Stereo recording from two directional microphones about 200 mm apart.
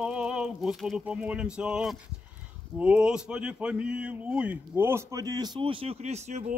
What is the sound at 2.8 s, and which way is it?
Speech, 5° right (ahead or behind).